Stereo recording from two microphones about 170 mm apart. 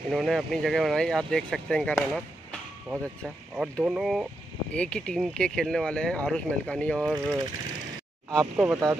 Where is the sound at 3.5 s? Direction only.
5° right (ahead or behind).